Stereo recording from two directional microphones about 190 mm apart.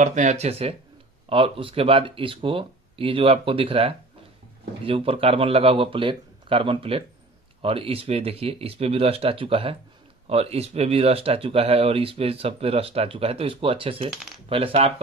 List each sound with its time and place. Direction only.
0.0 s speech: 40° right (ahead or behind)
14.1 s speech: centre (ahead or behind)
14.5 s speech: 30° right (ahead or behind)